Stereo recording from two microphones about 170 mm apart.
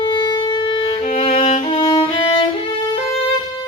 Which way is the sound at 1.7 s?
25° left (ahead or behind).